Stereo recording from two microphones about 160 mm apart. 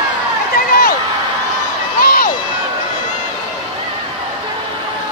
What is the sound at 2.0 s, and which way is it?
Crowd, 65° left (ahead or behind).